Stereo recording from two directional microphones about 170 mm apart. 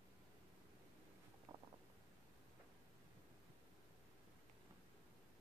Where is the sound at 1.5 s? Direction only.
20° right (ahead or behind).